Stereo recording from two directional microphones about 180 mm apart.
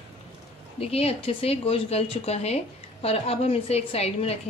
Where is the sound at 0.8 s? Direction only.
35° left (ahead or behind).